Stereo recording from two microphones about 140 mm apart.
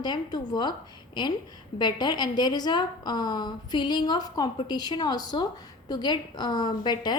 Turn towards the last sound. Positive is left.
turn(degrees=30)  # may be behind; listen again after turning